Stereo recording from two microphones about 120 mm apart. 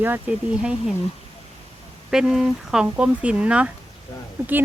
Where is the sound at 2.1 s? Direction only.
5° right (ahead or behind).